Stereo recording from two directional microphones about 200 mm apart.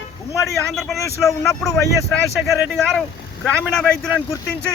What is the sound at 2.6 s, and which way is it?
Speech, centre (ahead or behind).